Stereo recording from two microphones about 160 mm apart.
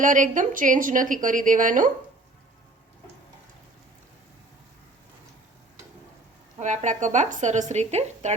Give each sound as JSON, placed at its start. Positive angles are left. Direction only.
{"t": 0.0, "sound": "a woman's voice", "side_deg": -55}
{"t": 6.6, "sound": "speech", "side_deg": -50}